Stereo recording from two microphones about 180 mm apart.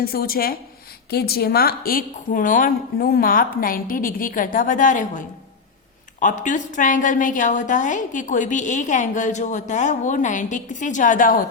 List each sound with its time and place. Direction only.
0.1 s a woman's voice: 55° left (ahead or behind)